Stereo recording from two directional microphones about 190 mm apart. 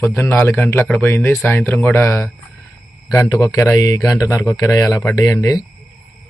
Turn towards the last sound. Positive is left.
turn(degrees=15)  # may be behind; listen again after turning